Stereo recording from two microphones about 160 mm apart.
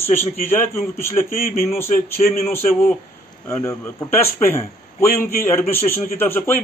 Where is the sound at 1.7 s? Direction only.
15° left (ahead or behind).